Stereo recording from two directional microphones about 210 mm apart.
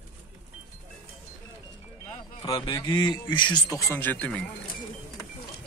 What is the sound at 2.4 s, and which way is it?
A man's voice, 20° left (ahead or behind).